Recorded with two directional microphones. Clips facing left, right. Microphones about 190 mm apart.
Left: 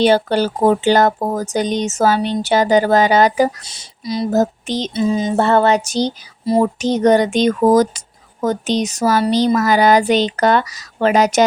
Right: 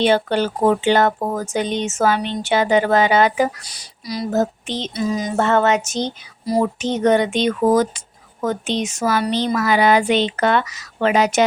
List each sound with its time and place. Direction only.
0.0 s speech: 40° left (ahead or behind)
3.6 s speech: 25° left (ahead or behind)
4.3 s speech: 40° left (ahead or behind)
4.9 s speech: 25° left (ahead or behind)
6.7 s speech: 35° left (ahead or behind)